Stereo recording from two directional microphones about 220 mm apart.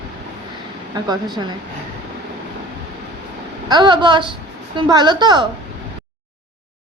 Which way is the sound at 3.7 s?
20° right (ahead or behind).